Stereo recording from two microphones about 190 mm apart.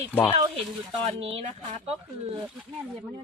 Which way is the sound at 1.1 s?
30° right (ahead or behind).